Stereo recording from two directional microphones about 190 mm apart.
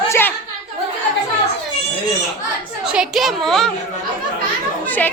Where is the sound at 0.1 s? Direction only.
10° left (ahead or behind).